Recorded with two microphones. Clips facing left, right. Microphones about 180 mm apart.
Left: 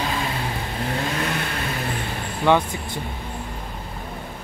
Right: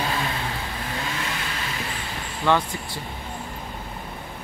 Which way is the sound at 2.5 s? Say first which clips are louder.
Left 3 dB; 15° left (ahead or behind).